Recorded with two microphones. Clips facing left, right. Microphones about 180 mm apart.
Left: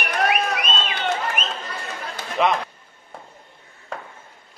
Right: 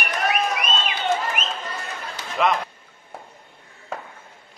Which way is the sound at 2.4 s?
Centre (ahead or behind).